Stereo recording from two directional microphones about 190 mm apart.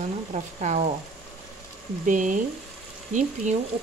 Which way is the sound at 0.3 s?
35° right (ahead or behind).